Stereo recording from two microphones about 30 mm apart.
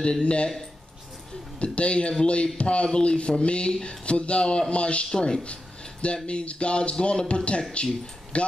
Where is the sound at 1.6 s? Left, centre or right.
Left.